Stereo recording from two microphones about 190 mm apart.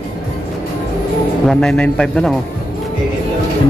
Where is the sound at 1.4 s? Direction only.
5° left (ahead or behind).